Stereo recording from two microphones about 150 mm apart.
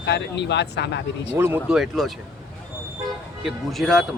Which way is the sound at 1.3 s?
15° right (ahead or behind).